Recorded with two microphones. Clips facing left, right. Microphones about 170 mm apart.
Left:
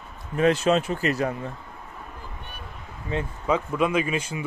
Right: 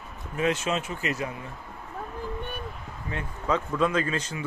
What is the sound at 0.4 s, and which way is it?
Speech, 35° left (ahead or behind).